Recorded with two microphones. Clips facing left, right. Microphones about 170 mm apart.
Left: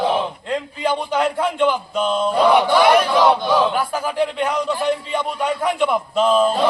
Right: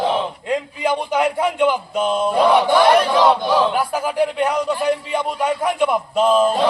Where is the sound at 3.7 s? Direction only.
10° right (ahead or behind).